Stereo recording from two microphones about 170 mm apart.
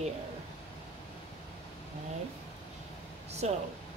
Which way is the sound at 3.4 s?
40° right (ahead or behind).